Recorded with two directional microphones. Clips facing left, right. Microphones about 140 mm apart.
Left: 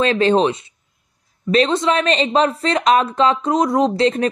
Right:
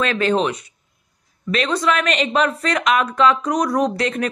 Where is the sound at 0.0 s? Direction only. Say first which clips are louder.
Left 4 dB; 30° left (ahead or behind).